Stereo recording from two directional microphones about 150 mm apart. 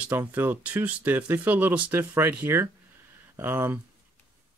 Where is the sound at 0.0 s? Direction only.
10° right (ahead or behind).